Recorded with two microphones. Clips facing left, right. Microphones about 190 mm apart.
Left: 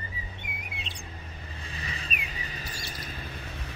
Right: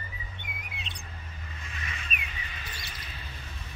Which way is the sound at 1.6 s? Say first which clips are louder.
Left 3 dB; 30° left (ahead or behind).